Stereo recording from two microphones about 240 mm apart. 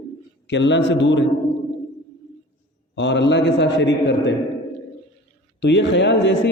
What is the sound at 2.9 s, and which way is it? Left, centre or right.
A man's voice, left.